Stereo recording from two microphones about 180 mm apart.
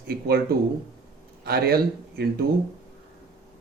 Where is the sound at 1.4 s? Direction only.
60° right (ahead or behind).